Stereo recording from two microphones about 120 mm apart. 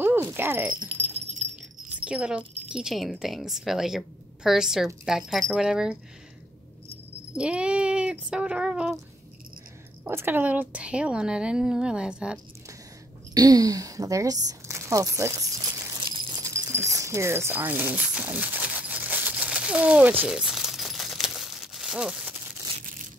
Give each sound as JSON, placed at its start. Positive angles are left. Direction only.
{"t": 0.0, "sound": "a sound", "side_deg": -20}
{"t": 0.8, "sound": "keys jangling", "side_deg": -60}
{"t": 2.0, "sound": "a woman's voice", "side_deg": -10}
{"t": 7.3, "sound": "a woman's voice", "side_deg": -10}
{"t": 10.0, "sound": "a woman's voice", "side_deg": -20}
{"t": 13.3, "sound": "speech", "side_deg": -30}
{"t": 16.1, "sound": "a sound", "side_deg": -30}